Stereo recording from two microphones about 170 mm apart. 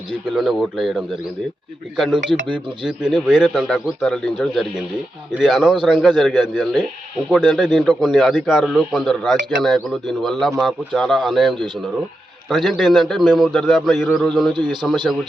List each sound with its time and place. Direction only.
0.3 s speech: centre (ahead or behind)
11.5 s speech: 25° right (ahead or behind)
12.5 s speech: centre (ahead or behind)
14.9 s speech: 25° right (ahead or behind)